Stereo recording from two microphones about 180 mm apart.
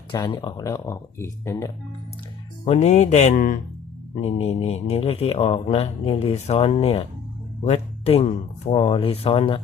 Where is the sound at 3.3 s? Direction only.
50° left (ahead or behind).